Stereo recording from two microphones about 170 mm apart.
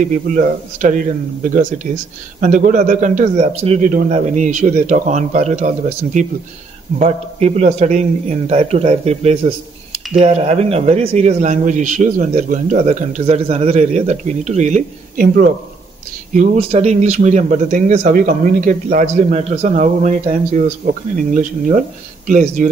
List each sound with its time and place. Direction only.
0.1 s a man's voice: 50° right (ahead or behind)
16.3 s speech: 40° right (ahead or behind)